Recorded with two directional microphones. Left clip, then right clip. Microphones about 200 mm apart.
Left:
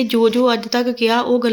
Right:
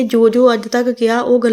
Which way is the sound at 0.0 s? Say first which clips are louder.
Right 4 dB; 15° right (ahead or behind).